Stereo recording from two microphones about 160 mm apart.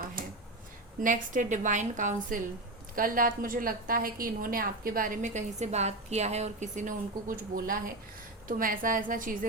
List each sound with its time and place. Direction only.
1.0 s a woman's voice: 55° right (ahead or behind)